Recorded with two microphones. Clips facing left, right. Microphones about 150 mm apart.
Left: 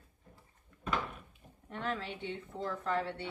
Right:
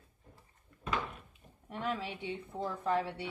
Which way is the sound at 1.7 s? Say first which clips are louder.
Right 1 dB; 10° right (ahead or behind).